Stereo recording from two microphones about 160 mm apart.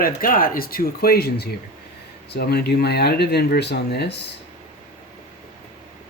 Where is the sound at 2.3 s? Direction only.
90° left.